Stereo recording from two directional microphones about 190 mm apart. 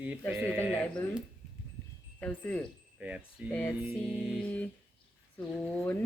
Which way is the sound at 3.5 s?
5° left (ahead or behind).